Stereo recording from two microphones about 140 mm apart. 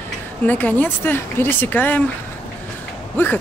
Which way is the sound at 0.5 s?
10° left (ahead or behind).